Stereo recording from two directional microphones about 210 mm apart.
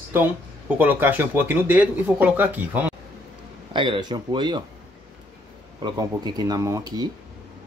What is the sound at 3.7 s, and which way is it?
Speech, 20° right (ahead or behind).